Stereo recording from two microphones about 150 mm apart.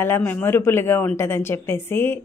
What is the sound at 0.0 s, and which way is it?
Speech, 15° left (ahead or behind).